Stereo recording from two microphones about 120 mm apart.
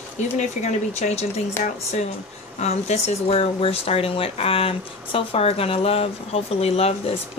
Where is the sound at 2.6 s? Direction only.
65° left (ahead or behind).